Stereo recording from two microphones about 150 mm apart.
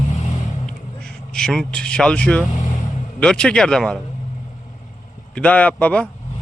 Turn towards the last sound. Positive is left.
turn(degrees=10)  # may be behind; listen again after turning